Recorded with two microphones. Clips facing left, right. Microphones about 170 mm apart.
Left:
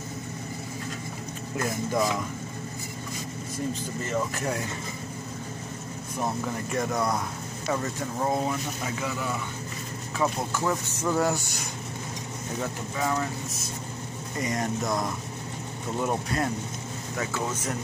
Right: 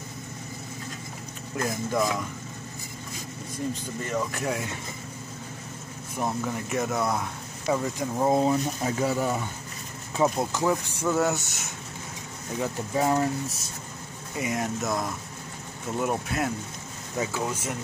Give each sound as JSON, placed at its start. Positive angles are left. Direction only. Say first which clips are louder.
{"t": 1.6, "sound": "speech", "louder": "even", "side_deg": 5}
{"t": 4.3, "sound": "speech", "louder": "even", "side_deg": 0}
{"t": 6.4, "sound": "speech", "louder": "right 1 dB", "side_deg": -5}
{"t": 10.1, "sound": "speech", "louder": "right 3 dB", "side_deg": -20}
{"t": 12.9, "sound": "speech", "louder": "right 5 dB", "side_deg": -35}
{"t": 14.3, "sound": "speech", "louder": "even", "side_deg": -5}